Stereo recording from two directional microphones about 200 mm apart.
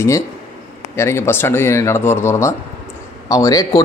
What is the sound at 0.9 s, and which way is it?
Speech, 15° left (ahead or behind).